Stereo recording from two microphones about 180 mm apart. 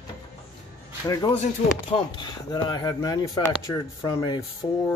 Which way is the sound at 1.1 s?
25° left (ahead or behind).